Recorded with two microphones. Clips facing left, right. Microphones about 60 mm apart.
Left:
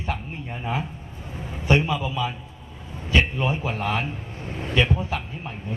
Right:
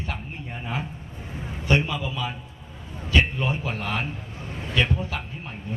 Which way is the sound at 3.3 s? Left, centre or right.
Centre.